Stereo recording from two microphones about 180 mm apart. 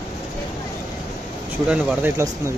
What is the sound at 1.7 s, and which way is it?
Speech, 5° right (ahead or behind).